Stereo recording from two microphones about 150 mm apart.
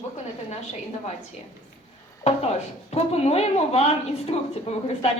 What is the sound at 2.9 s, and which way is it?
A woman's voice, 45° left (ahead or behind).